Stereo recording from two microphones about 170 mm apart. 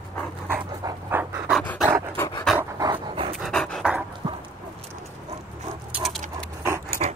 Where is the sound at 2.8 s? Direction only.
30° right (ahead or behind).